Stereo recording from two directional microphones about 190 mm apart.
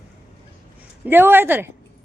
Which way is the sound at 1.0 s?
10° right (ahead or behind).